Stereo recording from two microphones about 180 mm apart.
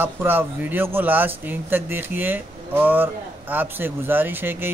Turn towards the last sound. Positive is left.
turn(degrees=-10)  # may be behind; listen again after turning